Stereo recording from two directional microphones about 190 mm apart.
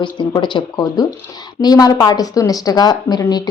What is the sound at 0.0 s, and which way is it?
Speech, 25° left (ahead or behind).